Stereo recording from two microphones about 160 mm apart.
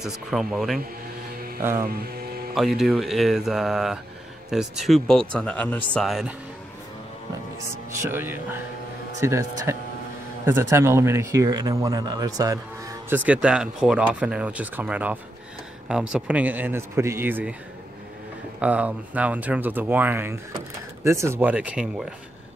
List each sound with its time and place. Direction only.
0.0 s speech: centre (ahead or behind)
1.6 s speech: 15° right (ahead or behind)
2.5 s speech: centre (ahead or behind)
6.0 s speech: centre (ahead or behind)
8.0 s speech: 15° right (ahead or behind)
13.1 s speech: 10° right (ahead or behind)
18.6 s speech: 10° right (ahead or behind)